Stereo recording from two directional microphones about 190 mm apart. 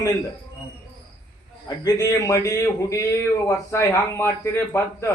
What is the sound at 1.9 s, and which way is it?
Speech, 20° left (ahead or behind).